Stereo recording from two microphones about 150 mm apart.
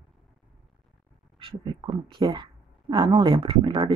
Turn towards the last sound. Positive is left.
turn(degrees=-40)  # may be behind; listen again after turning